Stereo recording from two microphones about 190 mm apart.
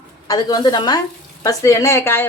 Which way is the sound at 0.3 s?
20° left (ahead or behind).